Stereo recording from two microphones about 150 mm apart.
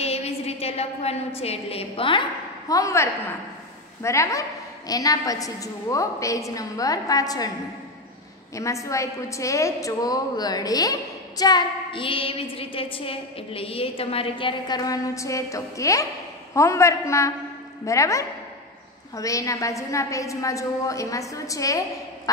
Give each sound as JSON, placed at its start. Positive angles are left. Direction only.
{"t": 0.0, "sound": "a woman's voice", "side_deg": 45}
{"t": 2.7, "sound": "a woman's voice", "side_deg": 20}
{"t": 8.5, "sound": "a woman's voice", "side_deg": 20}